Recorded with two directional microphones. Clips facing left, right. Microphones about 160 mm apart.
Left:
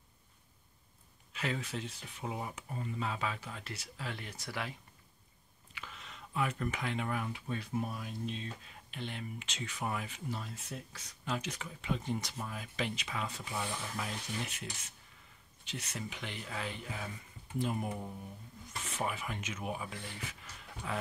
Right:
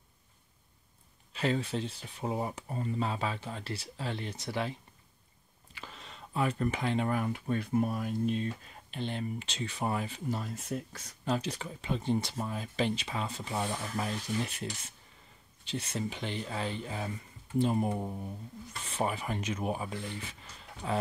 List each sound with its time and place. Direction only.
1.3 s speech: 30° right (ahead or behind)
5.8 s speech: 35° right (ahead or behind)
8.9 s speech: 35° right (ahead or behind)
15.6 s speech: 30° right (ahead or behind)